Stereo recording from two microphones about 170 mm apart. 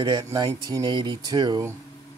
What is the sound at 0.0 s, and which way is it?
Speech, 25° right (ahead or behind).